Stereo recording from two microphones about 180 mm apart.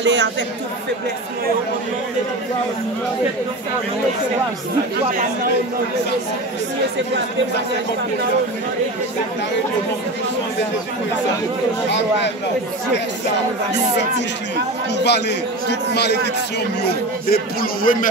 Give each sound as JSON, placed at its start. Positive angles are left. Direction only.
{"t": 0.0, "sound": "speech", "side_deg": -75}
{"t": 15.0, "sound": "a man's voice", "side_deg": 70}
{"t": 17.3, "sound": "a man's voice", "side_deg": 55}